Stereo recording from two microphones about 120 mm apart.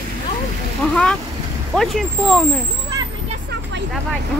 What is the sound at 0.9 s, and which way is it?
Speech, 5° left (ahead or behind).